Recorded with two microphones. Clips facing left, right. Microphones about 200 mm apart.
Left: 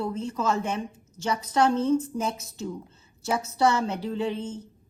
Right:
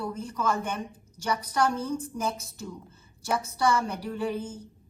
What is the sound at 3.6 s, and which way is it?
Speech, 25° left (ahead or behind).